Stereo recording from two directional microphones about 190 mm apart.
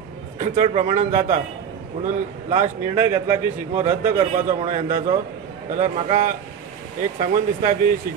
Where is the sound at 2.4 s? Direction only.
35° right (ahead or behind).